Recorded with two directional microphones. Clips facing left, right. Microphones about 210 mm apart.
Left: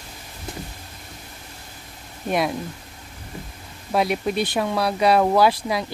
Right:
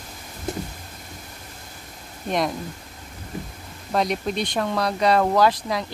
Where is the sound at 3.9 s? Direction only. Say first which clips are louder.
Left 2 dB; 5° left (ahead or behind).